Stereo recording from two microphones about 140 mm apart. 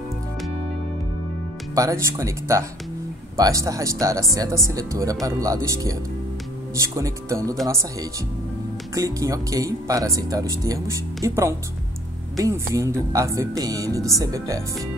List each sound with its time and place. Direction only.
1.8 s a woman's voice: 20° right (ahead or behind)
8.9 s a woman's voice: 25° right (ahead or behind)